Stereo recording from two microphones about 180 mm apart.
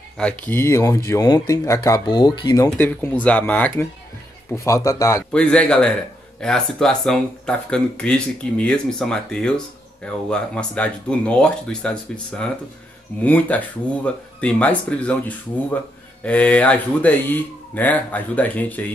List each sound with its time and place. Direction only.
0.2 s speech: 5° left (ahead or behind)
5.3 s speech: 5° left (ahead or behind)